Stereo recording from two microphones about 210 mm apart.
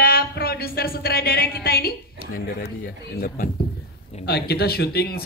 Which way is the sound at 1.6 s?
45° left (ahead or behind).